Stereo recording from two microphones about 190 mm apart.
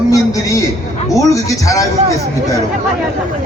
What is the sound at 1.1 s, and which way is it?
Speech, 15° left (ahead or behind).